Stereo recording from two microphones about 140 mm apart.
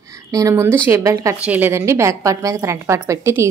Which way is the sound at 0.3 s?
25° right (ahead or behind).